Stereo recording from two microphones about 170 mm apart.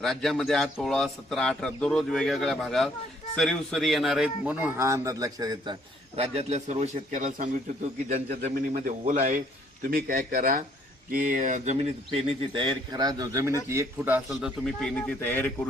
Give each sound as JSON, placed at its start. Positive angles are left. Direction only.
{"t": 0.0, "sound": "a man's voice", "side_deg": 0}
{"t": 6.1, "sound": "a man's voice", "side_deg": -40}
{"t": 8.7, "sound": "a man's voice", "side_deg": -50}